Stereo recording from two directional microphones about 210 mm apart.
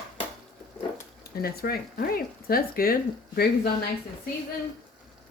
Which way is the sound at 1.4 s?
45° left (ahead or behind).